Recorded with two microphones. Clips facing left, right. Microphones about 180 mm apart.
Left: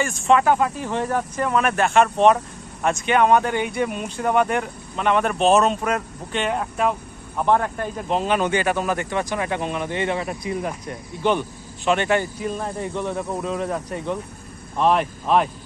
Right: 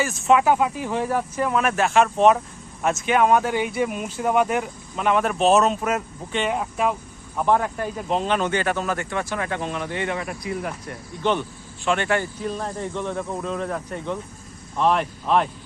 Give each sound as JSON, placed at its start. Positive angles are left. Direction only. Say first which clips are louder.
{"t": 0.0, "sound": "speech", "louder": "even", "side_deg": -5}
{"t": 8.2, "sound": "speech", "louder": "left 3 dB", "side_deg": 10}